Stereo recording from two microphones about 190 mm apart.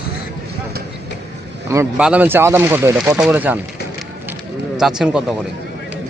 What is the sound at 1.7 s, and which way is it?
Speech, 15° right (ahead or behind).